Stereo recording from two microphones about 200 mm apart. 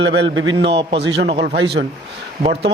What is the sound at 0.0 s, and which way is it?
Speech, 65° right (ahead or behind).